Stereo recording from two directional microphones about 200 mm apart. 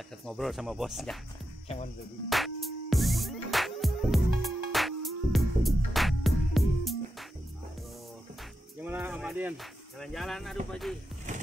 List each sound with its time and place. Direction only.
0.2 s speech: centre (ahead or behind)
2.2 s music: centre (ahead or behind)
8.8 s speech: 10° right (ahead or behind)
11.3 s a sound: 40° right (ahead or behind)